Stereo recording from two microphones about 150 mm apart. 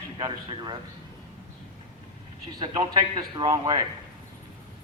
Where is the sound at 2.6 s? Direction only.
30° right (ahead or behind).